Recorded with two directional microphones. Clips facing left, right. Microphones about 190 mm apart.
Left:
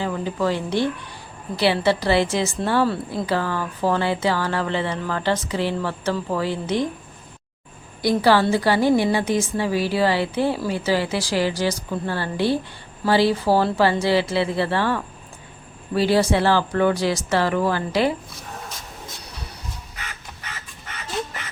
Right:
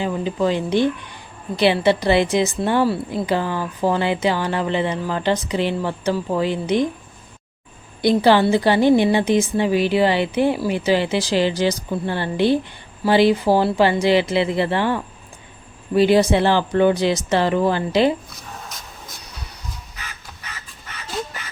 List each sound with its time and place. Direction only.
0.0 s a woman's voice: 20° right (ahead or behind)
8.2 s a woman's voice: 20° right (ahead or behind)